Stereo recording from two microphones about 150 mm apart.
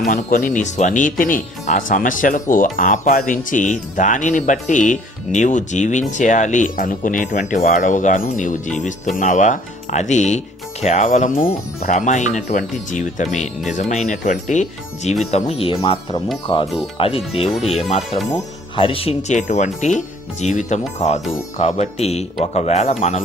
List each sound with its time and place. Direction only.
0.1 s speech: 60° left (ahead or behind)
11.9 s speech: 55° left (ahead or behind)